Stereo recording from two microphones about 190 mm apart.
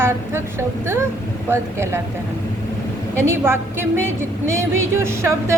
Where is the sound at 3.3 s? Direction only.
10° right (ahead or behind).